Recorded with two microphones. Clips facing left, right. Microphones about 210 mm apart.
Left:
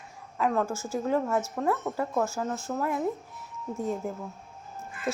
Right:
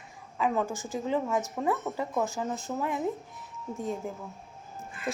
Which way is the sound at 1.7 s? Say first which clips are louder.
Left 2 dB; centre (ahead or behind).